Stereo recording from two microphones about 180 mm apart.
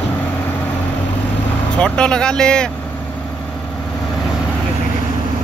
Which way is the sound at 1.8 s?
5° left (ahead or behind).